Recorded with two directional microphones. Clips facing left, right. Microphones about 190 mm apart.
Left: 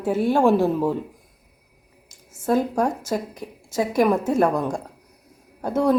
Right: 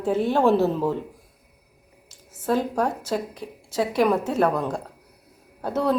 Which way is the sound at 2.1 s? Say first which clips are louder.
Left 2 dB; 10° left (ahead or behind).